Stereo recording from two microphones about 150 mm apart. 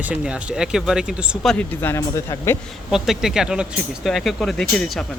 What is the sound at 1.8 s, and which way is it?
Speech, 20° left (ahead or behind).